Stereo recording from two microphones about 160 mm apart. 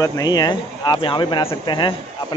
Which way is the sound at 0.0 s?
20° left (ahead or behind).